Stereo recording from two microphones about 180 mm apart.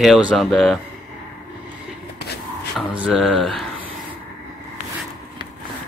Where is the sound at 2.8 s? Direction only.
5° left (ahead or behind).